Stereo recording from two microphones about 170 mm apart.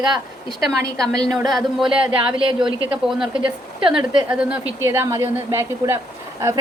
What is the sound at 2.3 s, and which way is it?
Speech, 30° right (ahead or behind).